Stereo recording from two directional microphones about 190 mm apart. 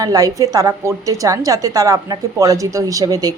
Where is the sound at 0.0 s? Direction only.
20° right (ahead or behind).